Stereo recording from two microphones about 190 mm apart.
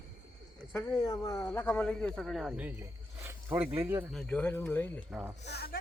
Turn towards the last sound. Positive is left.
turn(degrees=55)  # may be behind; listen again after turning